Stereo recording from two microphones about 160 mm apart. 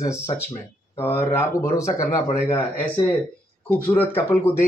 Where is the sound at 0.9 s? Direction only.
15° left (ahead or behind).